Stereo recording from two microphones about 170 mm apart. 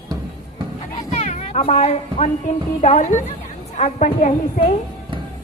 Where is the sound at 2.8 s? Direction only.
45° left (ahead or behind).